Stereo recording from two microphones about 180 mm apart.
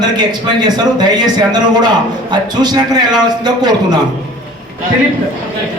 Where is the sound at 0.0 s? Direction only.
25° right (ahead or behind).